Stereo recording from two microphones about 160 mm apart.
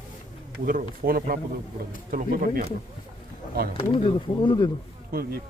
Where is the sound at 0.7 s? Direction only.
65° right (ahead or behind).